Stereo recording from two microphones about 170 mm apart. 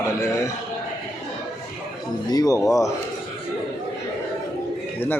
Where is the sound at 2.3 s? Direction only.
20° left (ahead or behind).